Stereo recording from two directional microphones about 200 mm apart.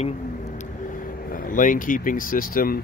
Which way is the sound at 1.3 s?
40° left (ahead or behind).